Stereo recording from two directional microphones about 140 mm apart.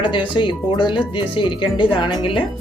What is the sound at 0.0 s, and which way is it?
Speech, 35° left (ahead or behind).